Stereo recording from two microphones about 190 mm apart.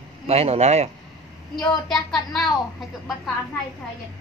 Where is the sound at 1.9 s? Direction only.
20° left (ahead or behind).